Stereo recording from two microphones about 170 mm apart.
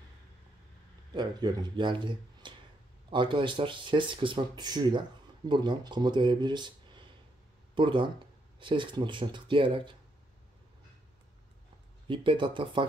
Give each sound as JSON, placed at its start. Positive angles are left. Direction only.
{"t": 1.1, "sound": "speech", "side_deg": -25}
{"t": 12.1, "sound": "speech", "side_deg": -30}